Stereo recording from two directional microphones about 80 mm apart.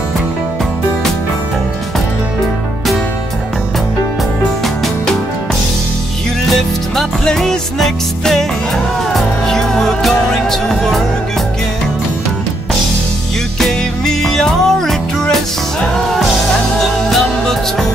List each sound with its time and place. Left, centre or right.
6.5 s music: centre
13.6 s music: centre
17.1 s music: centre